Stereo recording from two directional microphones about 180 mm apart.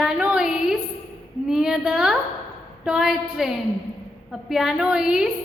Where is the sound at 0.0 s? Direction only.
5° right (ahead or behind).